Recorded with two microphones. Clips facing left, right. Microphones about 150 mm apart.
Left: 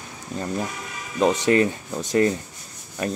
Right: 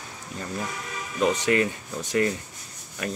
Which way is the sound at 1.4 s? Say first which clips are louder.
Left 6 dB; 35° left (ahead or behind).